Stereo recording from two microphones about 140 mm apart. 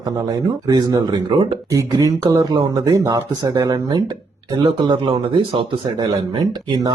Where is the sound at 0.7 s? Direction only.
30° right (ahead or behind).